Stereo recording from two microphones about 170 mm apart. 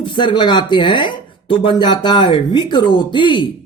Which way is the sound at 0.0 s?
30° left (ahead or behind).